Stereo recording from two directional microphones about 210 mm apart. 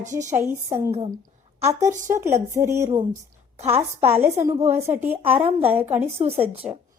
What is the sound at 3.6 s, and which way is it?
Speech, 30° right (ahead or behind).